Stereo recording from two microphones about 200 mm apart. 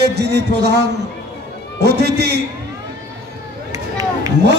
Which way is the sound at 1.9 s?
55° right (ahead or behind).